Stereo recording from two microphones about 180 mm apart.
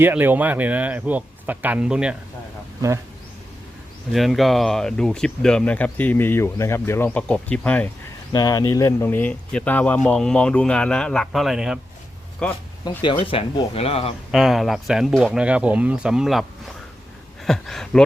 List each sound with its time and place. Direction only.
0.0 s speech: 10° right (ahead or behind)
4.1 s speech: centre (ahead or behind)
8.3 s speech: 20° left (ahead or behind); by 12.6 s 5° left (ahead or behind)
13.0 s speech: 30° left (ahead or behind)
14.3 s speech: centre (ahead or behind)